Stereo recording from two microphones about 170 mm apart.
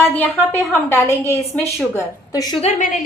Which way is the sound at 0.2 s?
10° left (ahead or behind).